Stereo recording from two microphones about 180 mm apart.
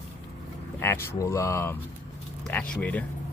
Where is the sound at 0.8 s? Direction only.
10° left (ahead or behind).